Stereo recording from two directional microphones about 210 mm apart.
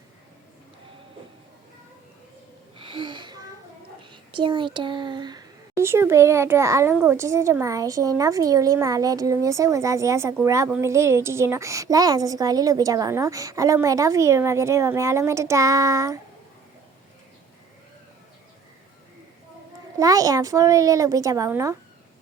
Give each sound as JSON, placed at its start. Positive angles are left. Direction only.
{"t": 2.7, "sound": "a sound", "side_deg": -25}
{"t": 4.1, "sound": "a child's voice", "side_deg": -25}
{"t": 20.0, "sound": "a child's voice", "side_deg": -15}